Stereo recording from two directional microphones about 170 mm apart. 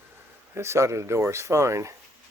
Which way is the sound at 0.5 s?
15° right (ahead or behind).